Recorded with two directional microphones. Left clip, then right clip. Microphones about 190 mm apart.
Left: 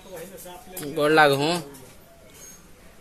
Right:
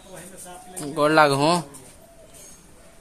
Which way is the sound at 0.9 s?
20° right (ahead or behind).